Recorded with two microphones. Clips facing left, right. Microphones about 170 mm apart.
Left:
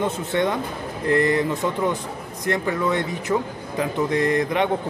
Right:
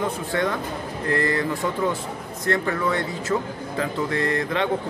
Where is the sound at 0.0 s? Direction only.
20° left (ahead or behind).